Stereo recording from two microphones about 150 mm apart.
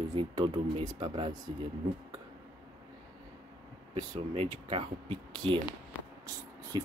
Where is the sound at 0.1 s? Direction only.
35° right (ahead or behind).